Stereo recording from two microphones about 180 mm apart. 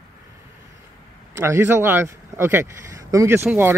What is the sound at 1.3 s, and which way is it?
Speech, 15° right (ahead or behind).